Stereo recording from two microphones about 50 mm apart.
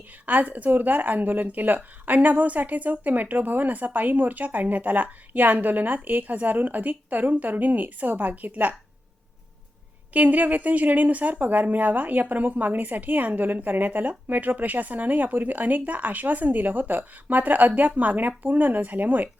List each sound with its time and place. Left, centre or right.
0.3 s speech: right
10.1 s speech: right